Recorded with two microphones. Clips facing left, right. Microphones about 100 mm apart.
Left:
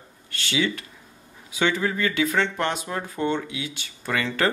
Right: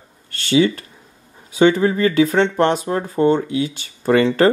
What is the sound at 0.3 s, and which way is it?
Speech, 35° right (ahead or behind).